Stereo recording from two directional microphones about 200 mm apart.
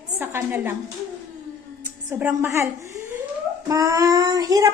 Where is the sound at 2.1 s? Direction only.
10° right (ahead or behind).